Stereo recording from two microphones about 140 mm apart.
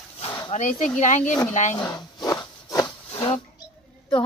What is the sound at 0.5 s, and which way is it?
Speech, 60° left (ahead or behind).